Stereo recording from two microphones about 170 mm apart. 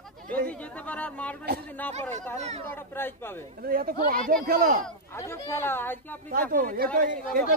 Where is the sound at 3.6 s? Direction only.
60° right (ahead or behind).